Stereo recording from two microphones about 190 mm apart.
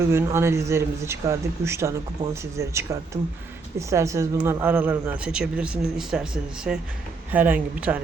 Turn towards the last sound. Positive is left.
turn(degrees=-10)  # may be behind; listen again after turning